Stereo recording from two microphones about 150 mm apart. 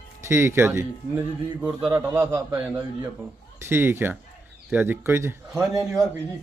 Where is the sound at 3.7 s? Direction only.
15° right (ahead or behind).